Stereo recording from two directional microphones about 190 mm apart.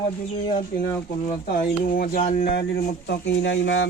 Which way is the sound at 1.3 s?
45° left (ahead or behind).